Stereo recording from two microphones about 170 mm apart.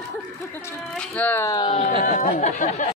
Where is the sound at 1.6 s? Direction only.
40° left (ahead or behind).